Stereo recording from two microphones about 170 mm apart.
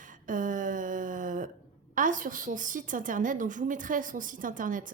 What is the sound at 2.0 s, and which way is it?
A woman's voice, 50° right (ahead or behind).